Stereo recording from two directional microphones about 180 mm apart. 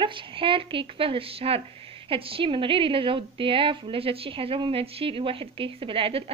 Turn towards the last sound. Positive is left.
turn(degrees=-30)  # may be behind; listen again after turning